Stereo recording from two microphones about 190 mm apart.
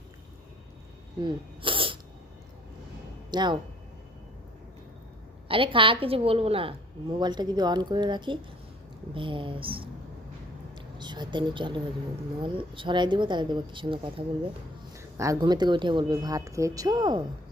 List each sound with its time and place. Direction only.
1.2 s sneeze: 25° right (ahead or behind)
3.2 s speech: 25° right (ahead or behind)
5.5 s a woman's voice: 30° right (ahead or behind)
10.8 s a woman's voice: 25° right (ahead or behind)